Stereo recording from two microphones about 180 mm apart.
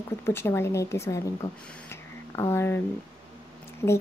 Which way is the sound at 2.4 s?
15° left (ahead or behind).